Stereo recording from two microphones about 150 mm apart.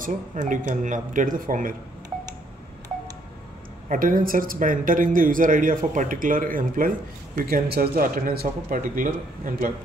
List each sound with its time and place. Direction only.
0.0 s speech: 60° right (ahead or behind)
3.9 s speech: 70° right (ahead or behind)